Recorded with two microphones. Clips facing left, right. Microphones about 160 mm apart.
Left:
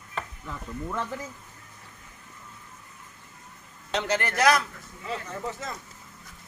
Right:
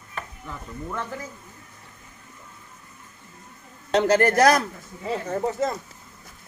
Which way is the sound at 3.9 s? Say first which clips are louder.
Right 9 dB; 45° right (ahead or behind).